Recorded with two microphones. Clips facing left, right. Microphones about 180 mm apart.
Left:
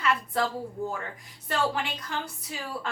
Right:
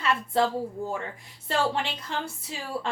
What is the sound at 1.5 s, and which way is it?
Speech, 30° right (ahead or behind).